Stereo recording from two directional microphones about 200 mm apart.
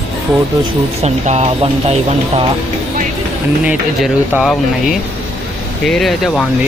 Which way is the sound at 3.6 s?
5° right (ahead or behind).